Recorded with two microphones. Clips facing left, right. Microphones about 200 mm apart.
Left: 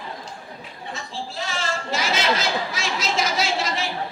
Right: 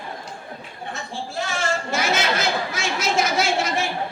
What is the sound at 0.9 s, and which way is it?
Chatter, 50° right (ahead or behind).